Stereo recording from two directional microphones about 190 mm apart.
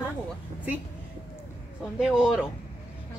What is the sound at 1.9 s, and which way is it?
Speech, 5° right (ahead or behind).